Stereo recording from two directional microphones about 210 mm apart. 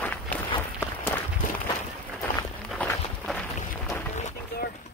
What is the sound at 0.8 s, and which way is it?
Walk, 10° left (ahead or behind).